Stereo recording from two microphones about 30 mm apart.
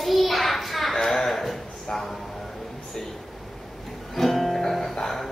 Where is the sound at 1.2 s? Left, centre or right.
Centre.